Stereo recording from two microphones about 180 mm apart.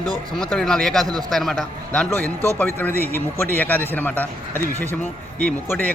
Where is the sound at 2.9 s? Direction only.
15° right (ahead or behind).